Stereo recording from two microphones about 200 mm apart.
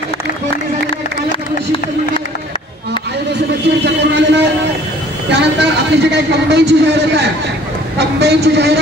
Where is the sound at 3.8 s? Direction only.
60° right (ahead or behind).